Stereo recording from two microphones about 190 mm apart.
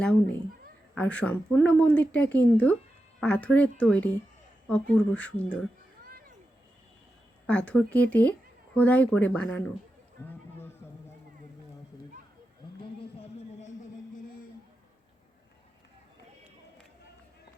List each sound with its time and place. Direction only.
0.9 s speech: 5° left (ahead or behind)
6.1 s a sound: 50° right (ahead or behind)
7.4 s speech: 5° left (ahead or behind)